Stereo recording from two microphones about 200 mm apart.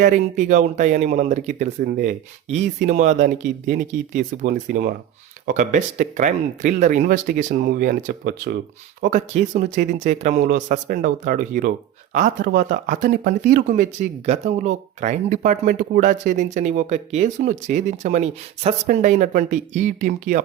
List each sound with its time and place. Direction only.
0.0 s speech: 40° right (ahead or behind)